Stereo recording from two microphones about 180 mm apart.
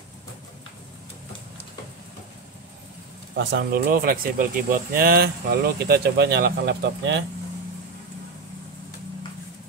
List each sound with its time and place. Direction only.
3.3 s speech: 65° right (ahead or behind)